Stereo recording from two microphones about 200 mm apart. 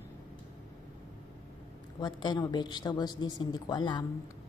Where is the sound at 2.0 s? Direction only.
20° left (ahead or behind).